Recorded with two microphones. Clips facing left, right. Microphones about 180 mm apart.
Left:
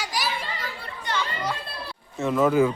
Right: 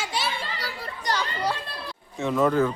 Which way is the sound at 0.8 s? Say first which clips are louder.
Right 2 dB; 40° right (ahead or behind).